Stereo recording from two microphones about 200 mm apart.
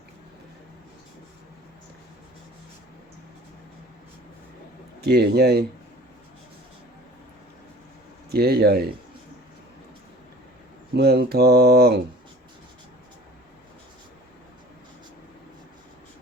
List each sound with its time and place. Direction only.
4.9 s speech: 55° right (ahead or behind)
8.3 s speech: 55° right (ahead or behind)
10.9 s speech: 55° right (ahead or behind)